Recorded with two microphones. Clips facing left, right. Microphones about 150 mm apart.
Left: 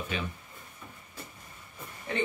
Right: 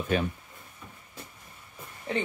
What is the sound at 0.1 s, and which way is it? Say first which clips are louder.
Speech: right 9 dB; 50° right (ahead or behind).